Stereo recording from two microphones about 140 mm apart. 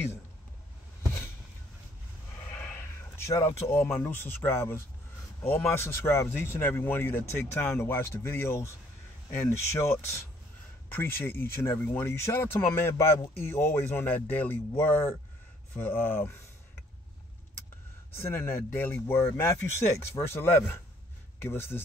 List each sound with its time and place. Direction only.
2.7 s speech: 20° left (ahead or behind)
18.1 s speech: 15° left (ahead or behind)